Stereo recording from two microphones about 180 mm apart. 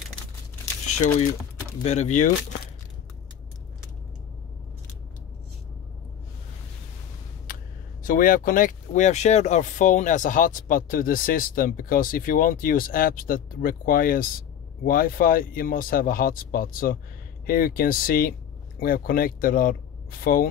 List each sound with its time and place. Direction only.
1.8 s speech: 40° left (ahead or behind)
8.1 s speech: 50° left (ahead or behind)